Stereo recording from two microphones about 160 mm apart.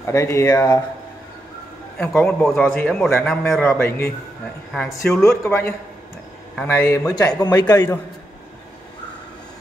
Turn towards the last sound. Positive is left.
turn(degrees=25)  # may be behind; listen again after turning